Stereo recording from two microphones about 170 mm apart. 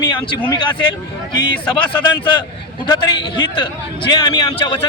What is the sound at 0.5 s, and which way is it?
Speech, 25° left (ahead or behind).